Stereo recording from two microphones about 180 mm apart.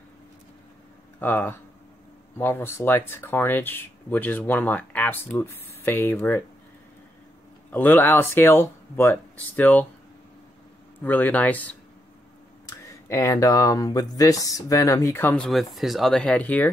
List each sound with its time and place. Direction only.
1.2 s speech: 10° left (ahead or behind)
7.7 s speech: 10° left (ahead or behind)
11.1 s speech: 10° left (ahead or behind)